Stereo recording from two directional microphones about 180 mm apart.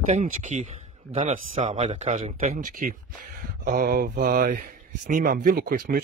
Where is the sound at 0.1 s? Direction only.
45° right (ahead or behind).